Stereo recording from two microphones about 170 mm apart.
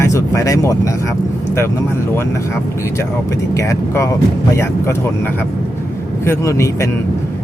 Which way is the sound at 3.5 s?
15° left (ahead or behind).